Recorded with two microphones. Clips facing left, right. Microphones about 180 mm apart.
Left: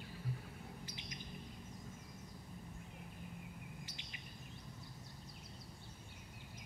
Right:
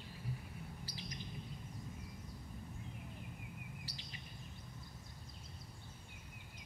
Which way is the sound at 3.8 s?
35° right (ahead or behind).